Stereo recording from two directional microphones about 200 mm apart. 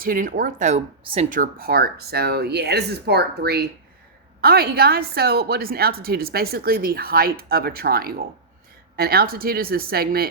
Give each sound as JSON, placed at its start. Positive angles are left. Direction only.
{"t": 0.0, "sound": "a woman's voice", "side_deg": -45}